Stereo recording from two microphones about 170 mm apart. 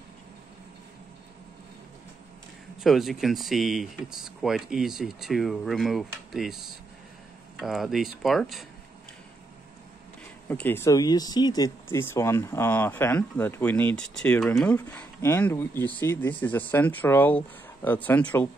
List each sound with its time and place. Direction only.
2.8 s speech: centre (ahead or behind)
10.5 s speech: 10° left (ahead or behind)